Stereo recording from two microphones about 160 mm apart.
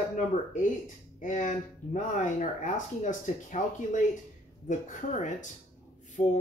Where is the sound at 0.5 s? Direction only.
50° left (ahead or behind).